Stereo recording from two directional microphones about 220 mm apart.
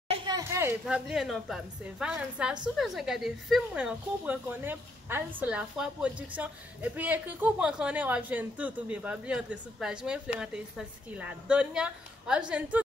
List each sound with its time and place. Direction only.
0.1 s a woman's voice: 15° right (ahead or behind)